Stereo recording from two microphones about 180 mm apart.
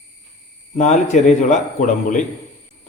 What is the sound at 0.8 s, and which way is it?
Speech, 40° left (ahead or behind).